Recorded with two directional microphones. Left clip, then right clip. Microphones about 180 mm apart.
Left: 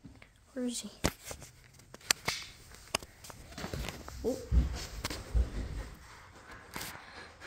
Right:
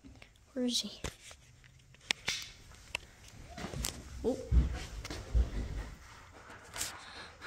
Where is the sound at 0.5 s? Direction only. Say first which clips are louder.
Right 4 dB; 15° right (ahead or behind).